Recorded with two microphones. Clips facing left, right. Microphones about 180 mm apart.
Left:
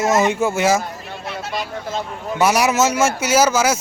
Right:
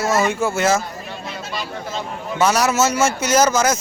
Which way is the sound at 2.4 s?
15° left (ahead or behind).